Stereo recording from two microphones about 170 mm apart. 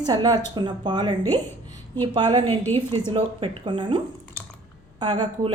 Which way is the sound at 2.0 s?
25° right (ahead or behind).